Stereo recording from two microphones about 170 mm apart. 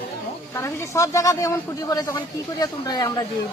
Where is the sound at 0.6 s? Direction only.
15° left (ahead or behind).